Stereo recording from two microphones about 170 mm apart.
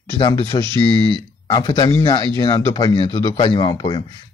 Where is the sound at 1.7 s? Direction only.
35° left (ahead or behind).